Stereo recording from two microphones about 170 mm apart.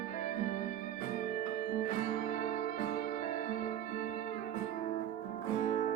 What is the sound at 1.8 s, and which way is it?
Music, 50° left (ahead or behind).